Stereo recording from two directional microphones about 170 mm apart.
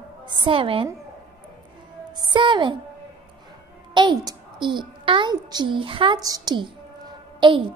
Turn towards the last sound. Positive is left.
turn(degrees=-30)  # may be behind; listen again after turning